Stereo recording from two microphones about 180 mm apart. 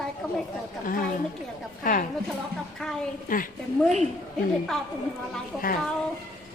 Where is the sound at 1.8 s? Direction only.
50° left (ahead or behind).